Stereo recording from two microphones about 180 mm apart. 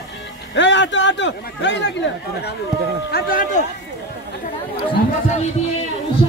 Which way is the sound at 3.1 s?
50° left (ahead or behind).